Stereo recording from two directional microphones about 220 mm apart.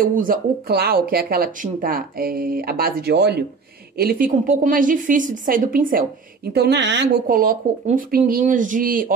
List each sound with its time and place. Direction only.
0.0 s speech: 40° right (ahead or behind)
6.5 s speech: 50° right (ahead or behind)